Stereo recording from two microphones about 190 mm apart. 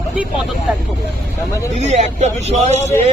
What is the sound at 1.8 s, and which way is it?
Speech, 35° right (ahead or behind).